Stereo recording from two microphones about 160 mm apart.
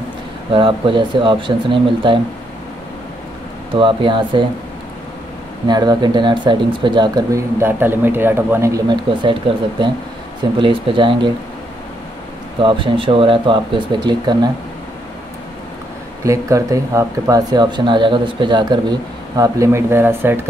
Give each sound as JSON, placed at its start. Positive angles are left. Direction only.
{"t": 0.5, "sound": "speech", "side_deg": -30}
{"t": 3.7, "sound": "speech", "side_deg": -30}
{"t": 5.7, "sound": "speech", "side_deg": -25}
{"t": 12.6, "sound": "speech", "side_deg": -30}
{"t": 16.3, "sound": "speech", "side_deg": -20}